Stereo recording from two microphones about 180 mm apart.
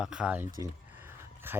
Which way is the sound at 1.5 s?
10° right (ahead or behind).